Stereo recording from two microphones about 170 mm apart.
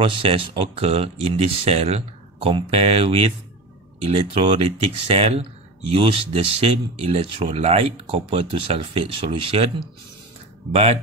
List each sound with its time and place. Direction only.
0.0 s speech: 30° right (ahead or behind)